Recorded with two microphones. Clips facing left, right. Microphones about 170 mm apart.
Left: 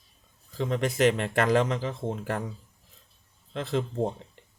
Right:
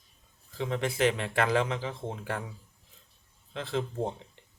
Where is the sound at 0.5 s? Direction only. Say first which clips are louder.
Left 3 dB; 40° left (ahead or behind).